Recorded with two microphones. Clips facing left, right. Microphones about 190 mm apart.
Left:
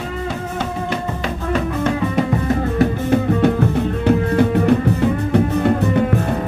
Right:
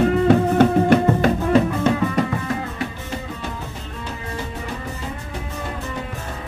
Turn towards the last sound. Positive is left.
turn(degrees=65)  # may be behind; listen again after turning